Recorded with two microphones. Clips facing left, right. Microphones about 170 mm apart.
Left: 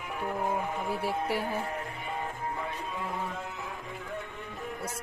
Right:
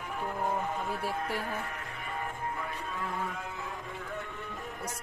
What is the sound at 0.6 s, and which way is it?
Speech, 10° left (ahead or behind).